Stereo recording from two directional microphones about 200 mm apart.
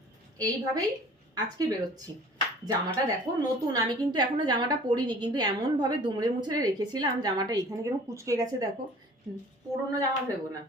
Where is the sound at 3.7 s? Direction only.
20° right (ahead or behind).